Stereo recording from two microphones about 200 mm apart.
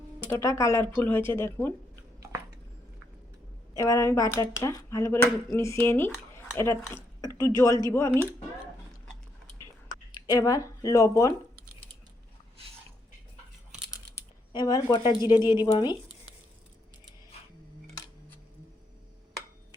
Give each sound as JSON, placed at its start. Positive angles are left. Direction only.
{"t": 0.3, "sound": "speech", "side_deg": 15}
{"t": 3.8, "sound": "speech", "side_deg": 15}
{"t": 7.7, "sound": "speech", "side_deg": -20}
{"t": 7.9, "sound": "speech", "side_deg": 15}
{"t": 9.0, "sound": "a sound", "side_deg": 5}
{"t": 9.9, "sound": "speech", "side_deg": 20}
{"t": 14.5, "sound": "speech", "side_deg": 20}
{"t": 15.2, "sound": "speech", "side_deg": -10}